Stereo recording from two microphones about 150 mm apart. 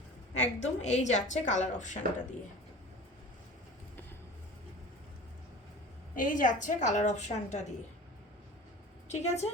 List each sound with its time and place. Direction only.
0.4 s a woman's voice: 50° left (ahead or behind)
6.1 s a woman's voice: 60° left (ahead or behind)
9.0 s a woman's voice: 45° left (ahead or behind)